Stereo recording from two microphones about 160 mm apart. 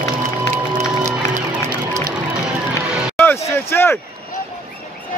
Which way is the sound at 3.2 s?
15° left (ahead or behind).